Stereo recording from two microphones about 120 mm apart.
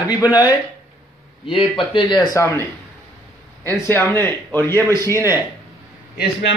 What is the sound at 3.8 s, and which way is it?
Speech, 15° left (ahead or behind).